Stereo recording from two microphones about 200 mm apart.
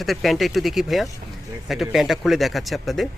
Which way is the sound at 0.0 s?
Centre (ahead or behind).